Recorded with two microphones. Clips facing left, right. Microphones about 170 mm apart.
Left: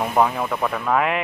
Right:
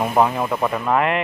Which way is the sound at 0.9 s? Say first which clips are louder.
Right 1 dB; 5° left (ahead or behind).